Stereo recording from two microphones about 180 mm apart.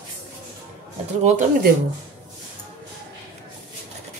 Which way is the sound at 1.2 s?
45° right (ahead or behind).